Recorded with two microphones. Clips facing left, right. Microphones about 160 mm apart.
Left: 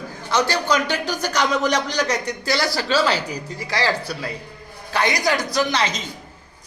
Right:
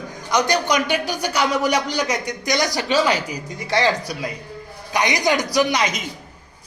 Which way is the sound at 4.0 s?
15° right (ahead or behind).